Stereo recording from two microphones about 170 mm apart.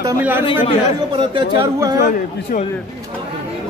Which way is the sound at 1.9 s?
50° left (ahead or behind).